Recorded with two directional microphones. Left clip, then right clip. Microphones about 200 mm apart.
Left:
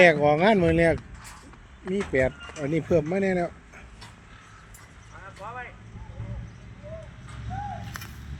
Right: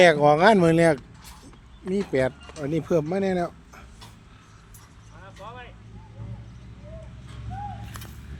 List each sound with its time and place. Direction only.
0.0 s speech: 30° right (ahead or behind)
2.1 s speech: 25° right (ahead or behind)
5.4 s vehicle: 25° right (ahead or behind)